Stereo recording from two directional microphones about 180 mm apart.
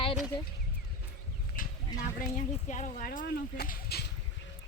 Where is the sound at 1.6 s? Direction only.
50° left (ahead or behind).